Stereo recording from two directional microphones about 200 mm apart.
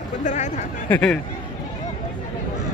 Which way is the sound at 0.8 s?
5° left (ahead or behind).